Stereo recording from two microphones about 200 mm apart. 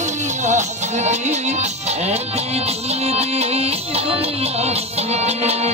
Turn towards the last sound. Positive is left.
turn(degrees=-30)  # may be behind; listen again after turning